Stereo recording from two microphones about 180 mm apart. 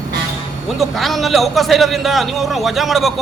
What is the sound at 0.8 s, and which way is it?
A man's voice, centre (ahead or behind).